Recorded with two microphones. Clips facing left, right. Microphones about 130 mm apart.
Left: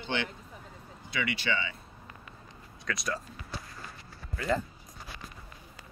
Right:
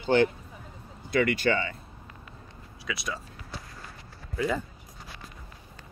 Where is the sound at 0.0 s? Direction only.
40° right (ahead or behind).